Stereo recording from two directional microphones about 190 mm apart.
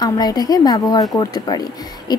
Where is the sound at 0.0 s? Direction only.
20° left (ahead or behind).